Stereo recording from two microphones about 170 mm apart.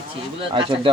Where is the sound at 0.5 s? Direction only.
30° right (ahead or behind).